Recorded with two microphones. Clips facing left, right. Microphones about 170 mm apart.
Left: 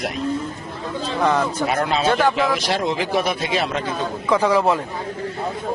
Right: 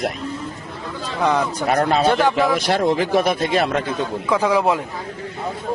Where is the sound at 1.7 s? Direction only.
40° right (ahead or behind).